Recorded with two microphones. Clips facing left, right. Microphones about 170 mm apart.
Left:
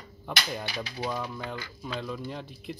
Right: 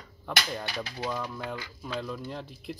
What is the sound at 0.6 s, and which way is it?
Speech, 20° left (ahead or behind).